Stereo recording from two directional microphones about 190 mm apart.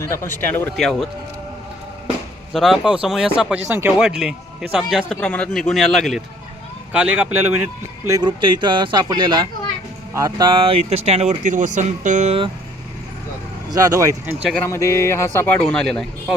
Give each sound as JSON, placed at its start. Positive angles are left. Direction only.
{"t": 0.0, "sound": "speech", "side_deg": 15}
{"t": 2.5, "sound": "speech", "side_deg": 0}
{"t": 13.7, "sound": "speech", "side_deg": -20}
{"t": 14.5, "sound": "speech", "side_deg": 15}